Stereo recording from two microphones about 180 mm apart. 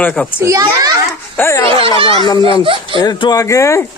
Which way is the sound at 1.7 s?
30° right (ahead or behind).